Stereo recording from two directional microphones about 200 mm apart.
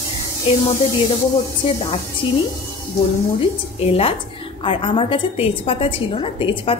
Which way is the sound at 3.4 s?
30° left (ahead or behind).